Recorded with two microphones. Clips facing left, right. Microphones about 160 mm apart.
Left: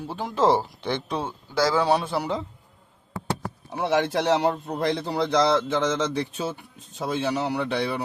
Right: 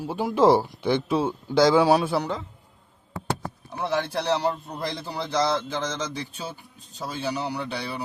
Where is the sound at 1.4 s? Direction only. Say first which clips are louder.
Right 4 dB; 20° right (ahead or behind).